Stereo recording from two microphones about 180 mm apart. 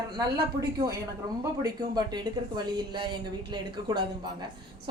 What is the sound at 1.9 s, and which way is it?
A woman's voice, 25° right (ahead or behind).